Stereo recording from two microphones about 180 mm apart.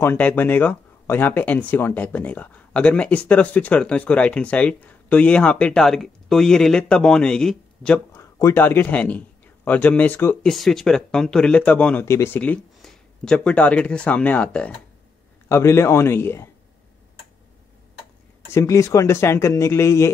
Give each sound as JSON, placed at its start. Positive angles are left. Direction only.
{"t": 0.0, "sound": "speech", "side_deg": 10}
{"t": 18.5, "sound": "speech", "side_deg": 15}